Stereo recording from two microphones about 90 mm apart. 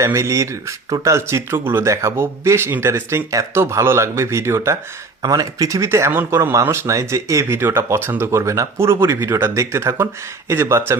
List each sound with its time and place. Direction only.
0.0 s speech: 35° right (ahead or behind)
5.2 s speech: 45° right (ahead or behind)